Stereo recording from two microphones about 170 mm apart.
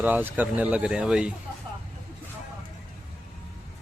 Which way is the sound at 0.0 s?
10° right (ahead or behind).